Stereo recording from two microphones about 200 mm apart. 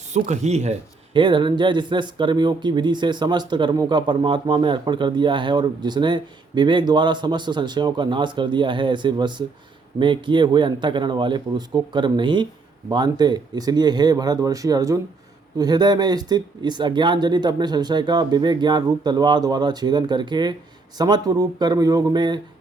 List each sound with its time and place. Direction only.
0.1 s speech: 35° right (ahead or behind)